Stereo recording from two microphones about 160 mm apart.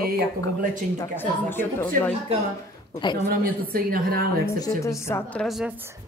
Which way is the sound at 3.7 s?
65° right (ahead or behind).